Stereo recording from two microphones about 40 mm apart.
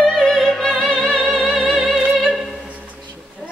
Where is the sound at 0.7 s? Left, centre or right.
Centre.